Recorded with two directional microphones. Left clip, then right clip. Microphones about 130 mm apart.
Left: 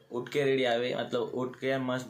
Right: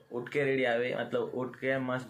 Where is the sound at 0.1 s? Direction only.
25° left (ahead or behind).